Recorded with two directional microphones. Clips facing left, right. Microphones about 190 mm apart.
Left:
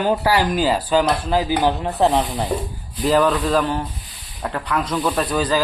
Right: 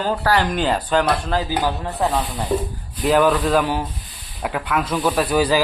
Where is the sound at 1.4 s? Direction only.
20° left (ahead or behind).